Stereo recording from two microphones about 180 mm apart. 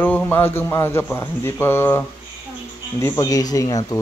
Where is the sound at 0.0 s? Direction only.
10° left (ahead or behind).